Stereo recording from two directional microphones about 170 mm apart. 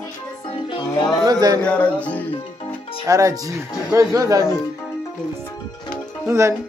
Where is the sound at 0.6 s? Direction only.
25° left (ahead or behind).